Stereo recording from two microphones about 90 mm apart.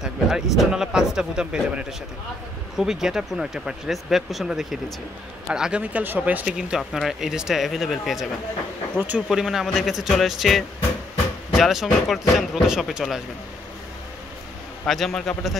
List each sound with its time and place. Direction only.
0.0 s speech: 5° right (ahead or behind)
6.4 s speech: 5° right (ahead or behind)
9.3 s speech: 5° right (ahead or behind)
14.9 s speech: 5° left (ahead or behind)